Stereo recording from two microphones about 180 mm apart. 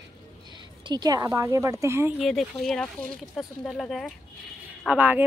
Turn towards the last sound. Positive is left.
turn(degrees=-10)  # may be behind; listen again after turning